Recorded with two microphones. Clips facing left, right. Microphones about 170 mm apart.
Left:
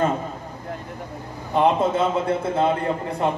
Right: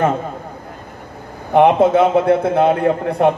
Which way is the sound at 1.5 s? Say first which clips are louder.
Right 8 dB; 65° right (ahead or behind).